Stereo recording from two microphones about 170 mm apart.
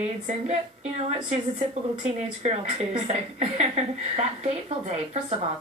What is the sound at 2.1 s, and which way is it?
A woman's voice, 40° right (ahead or behind).